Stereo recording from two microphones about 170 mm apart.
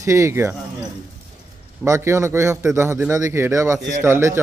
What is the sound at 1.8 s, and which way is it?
A man's voice, 15° right (ahead or behind).